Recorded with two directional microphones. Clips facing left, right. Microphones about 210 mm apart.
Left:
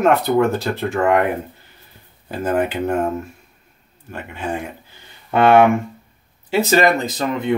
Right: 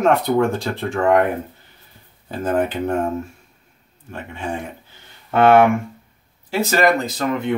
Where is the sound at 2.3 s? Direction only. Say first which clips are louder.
Left 1 dB; 10° left (ahead or behind).